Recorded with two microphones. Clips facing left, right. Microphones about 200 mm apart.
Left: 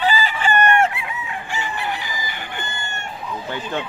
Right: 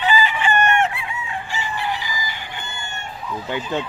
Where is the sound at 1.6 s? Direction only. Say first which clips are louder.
Right 1 dB; 55° left (ahead or behind).